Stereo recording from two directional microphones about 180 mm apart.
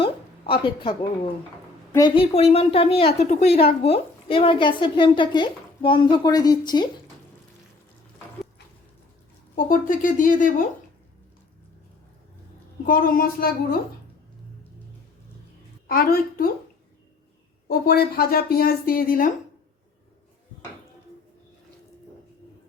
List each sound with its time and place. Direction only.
0.0 s a woman's voice: 30° left (ahead or behind)
9.6 s speech: 50° left (ahead or behind)
12.8 s speech: 50° left (ahead or behind)
15.9 s speech: 55° left (ahead or behind)
17.7 s speech: 55° left (ahead or behind)